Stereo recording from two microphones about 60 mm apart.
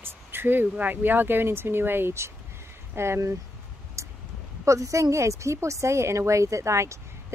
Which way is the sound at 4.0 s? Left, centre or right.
Right.